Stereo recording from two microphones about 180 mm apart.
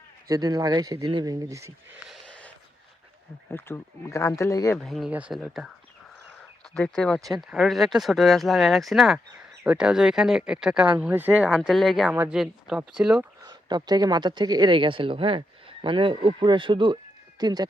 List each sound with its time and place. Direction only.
0.3 s speech: 20° right (ahead or behind)
2.0 s a sound: 5° left (ahead or behind)
3.5 s speech: 15° left (ahead or behind)
4.8 s speech: centre (ahead or behind)
6.7 s speech: 5° left (ahead or behind)
13.4 s speech: 25° right (ahead or behind)